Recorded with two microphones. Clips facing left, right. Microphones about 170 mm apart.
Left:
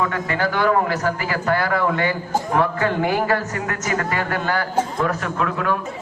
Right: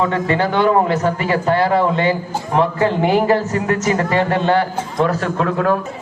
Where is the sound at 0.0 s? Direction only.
25° right (ahead or behind).